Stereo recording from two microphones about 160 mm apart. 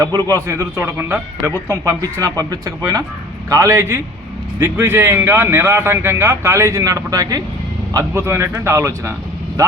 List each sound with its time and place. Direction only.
0.0 s speech: 25° right (ahead or behind)